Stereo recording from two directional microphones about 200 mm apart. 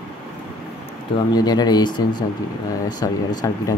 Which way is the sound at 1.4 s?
20° left (ahead or behind).